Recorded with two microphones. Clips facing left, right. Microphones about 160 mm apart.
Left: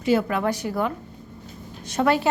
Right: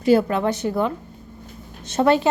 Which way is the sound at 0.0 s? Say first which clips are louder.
Right 4 dB; 35° right (ahead or behind).